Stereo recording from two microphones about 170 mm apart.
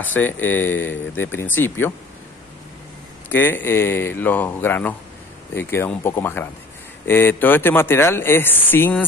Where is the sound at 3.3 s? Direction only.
10° left (ahead or behind).